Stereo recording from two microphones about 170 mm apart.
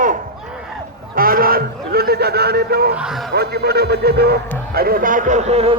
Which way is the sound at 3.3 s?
70° right (ahead or behind).